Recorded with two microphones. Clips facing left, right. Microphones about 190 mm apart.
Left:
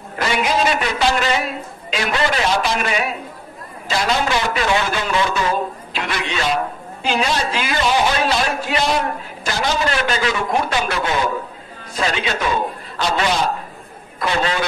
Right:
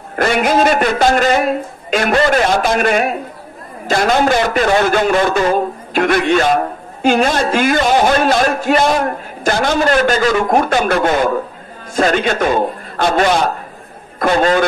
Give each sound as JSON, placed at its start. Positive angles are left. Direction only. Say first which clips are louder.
{"t": 0.1, "sound": "a man's voice", "louder": "right 6 dB", "side_deg": -55}